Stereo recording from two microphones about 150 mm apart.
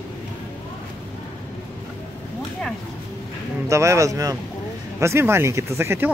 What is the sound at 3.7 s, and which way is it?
Speech, 20° right (ahead or behind).